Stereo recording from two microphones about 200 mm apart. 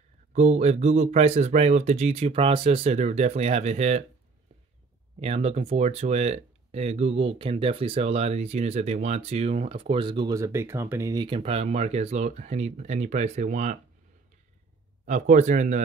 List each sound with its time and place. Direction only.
0.3 s speech: 35° right (ahead or behind)
5.2 s speech: 30° right (ahead or behind)
15.0 s speech: 40° right (ahead or behind)